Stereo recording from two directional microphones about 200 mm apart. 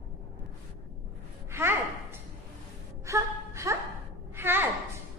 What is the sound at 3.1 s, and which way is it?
Gasp, 15° right (ahead or behind).